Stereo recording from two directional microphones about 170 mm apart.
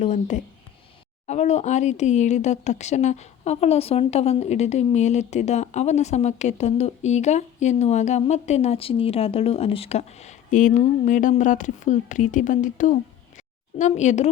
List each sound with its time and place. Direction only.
0.0 s speech: 45° left (ahead or behind)